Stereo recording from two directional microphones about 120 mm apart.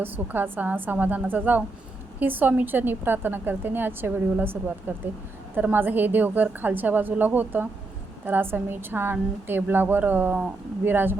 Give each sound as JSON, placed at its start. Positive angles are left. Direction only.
{"t": 0.0, "sound": "a woman's voice", "side_deg": -15}